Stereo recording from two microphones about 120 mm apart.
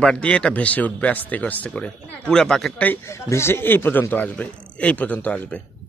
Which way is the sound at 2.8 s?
20° left (ahead or behind).